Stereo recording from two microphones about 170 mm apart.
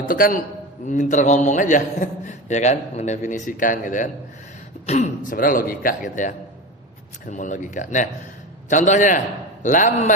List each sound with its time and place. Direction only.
0.1 s a man's voice: 55° left (ahead or behind)